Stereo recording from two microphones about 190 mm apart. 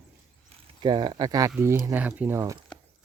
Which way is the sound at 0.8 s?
25° right (ahead or behind).